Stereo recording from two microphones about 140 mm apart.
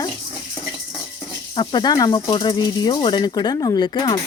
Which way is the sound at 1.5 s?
35° left (ahead or behind).